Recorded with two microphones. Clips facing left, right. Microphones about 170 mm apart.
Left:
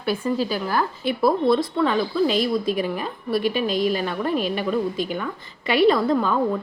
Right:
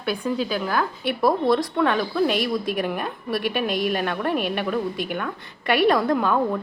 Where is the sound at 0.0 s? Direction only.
Centre (ahead or behind).